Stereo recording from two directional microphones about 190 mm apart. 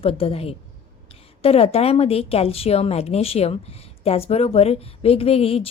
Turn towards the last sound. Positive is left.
turn(degrees=30)  # may be behind; listen again after turning